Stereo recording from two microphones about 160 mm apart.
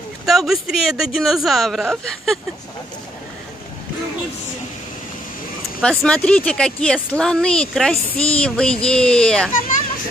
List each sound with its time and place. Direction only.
0.2 s speech: centre (ahead or behind)
5.8 s speech: 5° left (ahead or behind)